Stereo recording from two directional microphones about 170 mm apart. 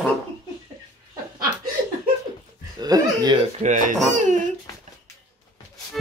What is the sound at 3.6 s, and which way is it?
Speech, 45° right (ahead or behind).